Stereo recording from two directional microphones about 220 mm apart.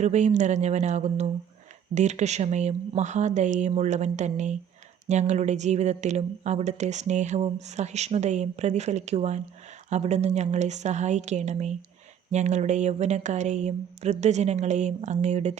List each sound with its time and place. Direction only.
0.0 s speech: 30° right (ahead or behind)